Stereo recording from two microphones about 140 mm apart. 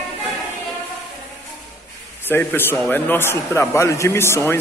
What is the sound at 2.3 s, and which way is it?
A man's voice, 15° left (ahead or behind).